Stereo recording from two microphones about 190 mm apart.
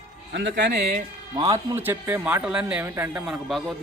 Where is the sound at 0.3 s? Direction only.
65° right (ahead or behind).